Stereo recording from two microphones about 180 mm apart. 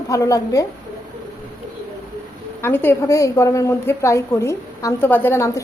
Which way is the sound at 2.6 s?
10° left (ahead or behind).